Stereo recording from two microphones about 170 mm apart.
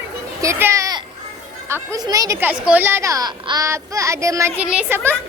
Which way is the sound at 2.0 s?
20° right (ahead or behind).